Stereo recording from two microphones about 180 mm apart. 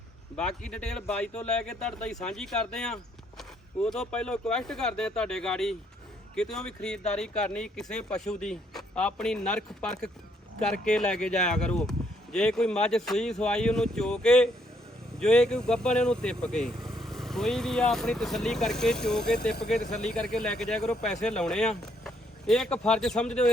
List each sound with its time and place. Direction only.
0.3 s speech: 5° left (ahead or behind)